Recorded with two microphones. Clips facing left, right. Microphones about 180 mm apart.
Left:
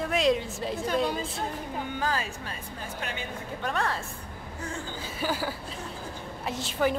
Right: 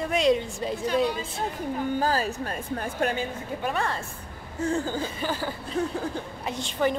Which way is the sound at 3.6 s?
Centre (ahead or behind).